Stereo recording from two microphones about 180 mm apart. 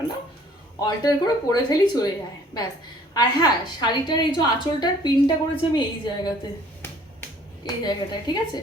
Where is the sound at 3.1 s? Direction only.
20° left (ahead or behind).